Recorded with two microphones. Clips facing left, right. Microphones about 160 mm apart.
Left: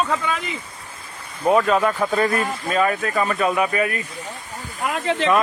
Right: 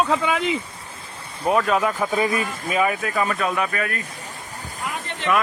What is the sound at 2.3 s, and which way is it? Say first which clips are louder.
Speech: left 2 dB; 50° left (ahead or behind).